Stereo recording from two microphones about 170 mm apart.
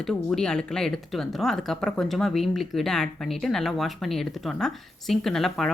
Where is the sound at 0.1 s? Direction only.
Centre (ahead or behind).